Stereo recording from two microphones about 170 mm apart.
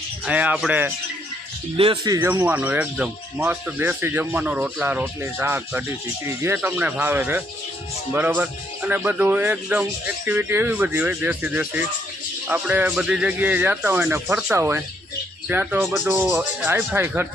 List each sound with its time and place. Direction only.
0.3 s speech: 10° right (ahead or behind)
1.7 s speech: 30° right (ahead or behind)
2.1 s speech: 10° right (ahead or behind)